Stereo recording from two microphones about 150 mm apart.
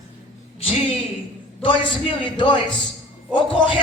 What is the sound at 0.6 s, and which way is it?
A woman's voice, 35° left (ahead or behind).